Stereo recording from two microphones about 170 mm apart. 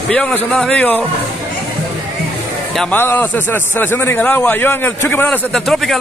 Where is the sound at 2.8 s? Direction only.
10° left (ahead or behind).